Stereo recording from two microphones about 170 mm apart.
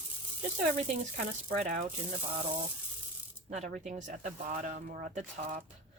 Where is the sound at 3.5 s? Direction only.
45° right (ahead or behind).